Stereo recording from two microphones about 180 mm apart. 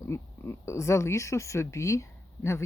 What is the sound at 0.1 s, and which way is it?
Speech, 15° left (ahead or behind).